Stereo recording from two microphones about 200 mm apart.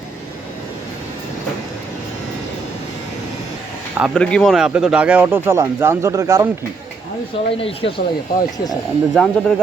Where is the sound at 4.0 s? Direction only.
5° left (ahead or behind); by 6.4 s 15° right (ahead or behind).